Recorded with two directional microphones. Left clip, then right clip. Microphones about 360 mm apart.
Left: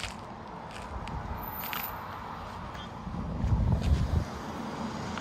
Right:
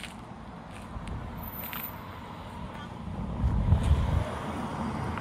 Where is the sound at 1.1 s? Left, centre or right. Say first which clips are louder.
Left 3 dB; centre.